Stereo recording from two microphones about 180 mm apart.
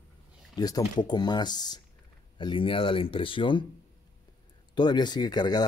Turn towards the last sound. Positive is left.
turn(degrees=25)  # may be behind; listen again after turning